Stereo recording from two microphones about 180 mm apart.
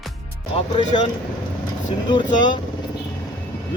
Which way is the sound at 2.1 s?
25° left (ahead or behind).